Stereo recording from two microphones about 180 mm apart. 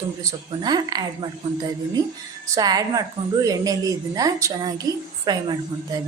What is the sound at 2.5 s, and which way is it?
A woman's voice, 20° right (ahead or behind).